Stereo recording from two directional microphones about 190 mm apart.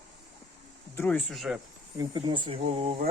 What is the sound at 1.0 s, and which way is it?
Speech, 10° left (ahead or behind).